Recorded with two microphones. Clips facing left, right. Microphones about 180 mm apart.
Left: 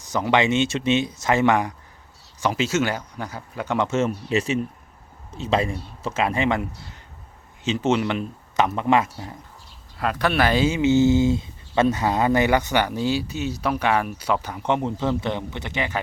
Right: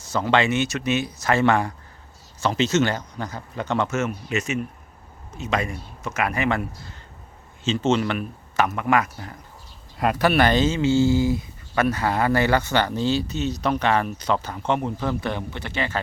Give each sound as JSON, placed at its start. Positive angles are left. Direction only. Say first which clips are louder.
{"t": 0.0, "sound": "speech", "louder": "even", "side_deg": 15}
{"t": 3.8, "sound": "speech", "louder": "left 3 dB", "side_deg": 30}
{"t": 10.0, "sound": "speech", "louder": "right 2 dB", "side_deg": -10}